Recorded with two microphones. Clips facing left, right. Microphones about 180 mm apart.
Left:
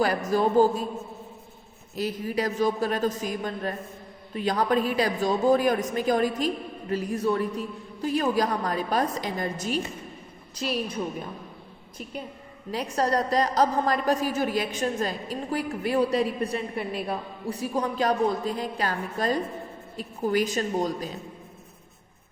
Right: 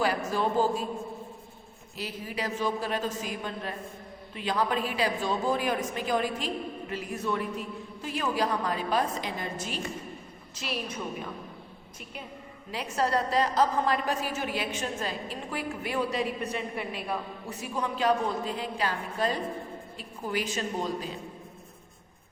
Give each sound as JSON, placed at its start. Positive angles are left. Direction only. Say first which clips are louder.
{"t": 0.3, "sound": "a woman's voice", "louder": "left 6 dB", "side_deg": 40}
{"t": 2.0, "sound": "a woman's voice", "louder": "left 7 dB", "side_deg": 45}
{"t": 12.7, "sound": "a woman's voice", "louder": "left 3 dB", "side_deg": 40}